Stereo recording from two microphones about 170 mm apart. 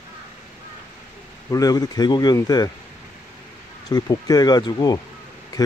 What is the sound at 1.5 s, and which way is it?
Speech, 20° left (ahead or behind).